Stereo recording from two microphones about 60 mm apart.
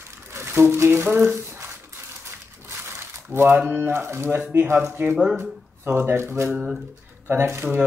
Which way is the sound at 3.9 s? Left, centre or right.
Right.